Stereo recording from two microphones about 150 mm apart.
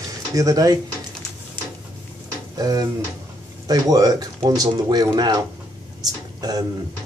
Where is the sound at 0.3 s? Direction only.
20° right (ahead or behind).